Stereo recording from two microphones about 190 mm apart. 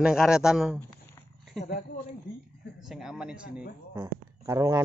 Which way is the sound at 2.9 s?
Centre (ahead or behind).